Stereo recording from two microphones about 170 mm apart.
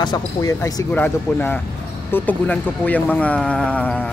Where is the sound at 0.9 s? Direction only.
10° left (ahead or behind).